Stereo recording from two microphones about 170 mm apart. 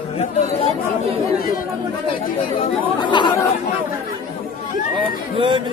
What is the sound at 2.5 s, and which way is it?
Speech, 25° left (ahead or behind).